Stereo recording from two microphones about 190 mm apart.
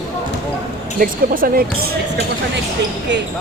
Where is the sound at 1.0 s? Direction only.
50° right (ahead or behind).